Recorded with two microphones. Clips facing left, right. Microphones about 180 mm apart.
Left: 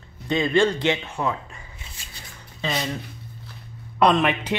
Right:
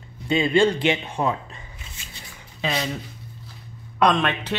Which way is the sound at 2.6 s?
5° right (ahead or behind).